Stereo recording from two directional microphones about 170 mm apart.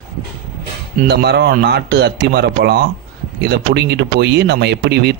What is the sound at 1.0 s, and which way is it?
Speech, 75° right (ahead or behind).